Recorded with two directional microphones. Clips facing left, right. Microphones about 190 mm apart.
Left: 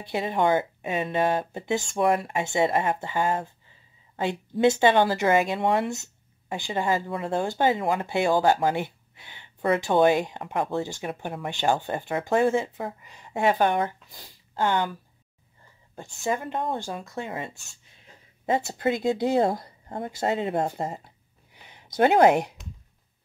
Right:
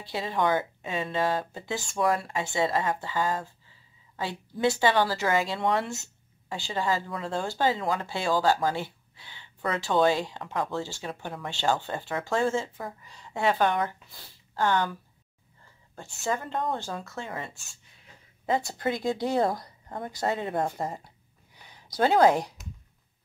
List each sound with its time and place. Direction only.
0.0 s speech: 20° left (ahead or behind)
16.0 s speech: 15° left (ahead or behind)
18.7 s speech: 20° left (ahead or behind)